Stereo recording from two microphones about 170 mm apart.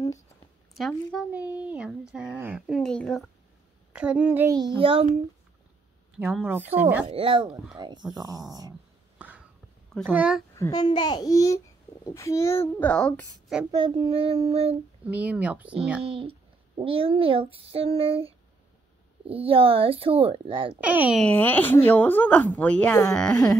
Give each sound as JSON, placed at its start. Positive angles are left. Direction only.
{"t": 0.7, "sound": "speech", "side_deg": 0}
{"t": 3.9, "sound": "a child's voice", "side_deg": -5}
{"t": 4.6, "sound": "a child's voice", "side_deg": -30}
{"t": 6.1, "sound": "a child's voice", "side_deg": -5}
{"t": 7.1, "sound": "a child's voice", "side_deg": -30}
{"t": 9.2, "sound": "a sound", "side_deg": -10}
{"t": 10.0, "sound": "a child's voice", "side_deg": -5}
{"t": 10.5, "sound": "a child's voice", "side_deg": 20}
{"t": 13.7, "sound": "a child's voice", "side_deg": -30}
{"t": 15.0, "sound": "a child's voice", "side_deg": -10}
{"t": 16.0, "sound": "a child's voice", "side_deg": -30}
{"t": 20.8, "sound": "a child's voice", "side_deg": -10}
{"t": 21.2, "sound": "a child's voice", "side_deg": 10}